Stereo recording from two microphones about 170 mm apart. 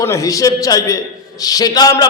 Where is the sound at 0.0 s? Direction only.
20° left (ahead or behind).